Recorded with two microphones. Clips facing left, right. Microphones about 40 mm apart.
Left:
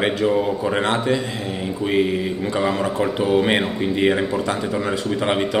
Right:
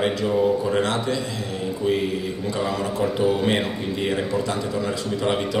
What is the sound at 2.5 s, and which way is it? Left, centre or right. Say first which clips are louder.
A man's voice: left 3 dB; left.